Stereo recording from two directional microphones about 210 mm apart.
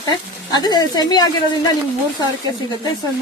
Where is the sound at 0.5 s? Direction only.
20° left (ahead or behind).